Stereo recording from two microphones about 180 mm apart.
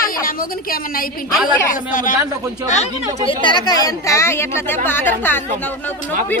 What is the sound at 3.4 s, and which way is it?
A woman's voice, 25° left (ahead or behind).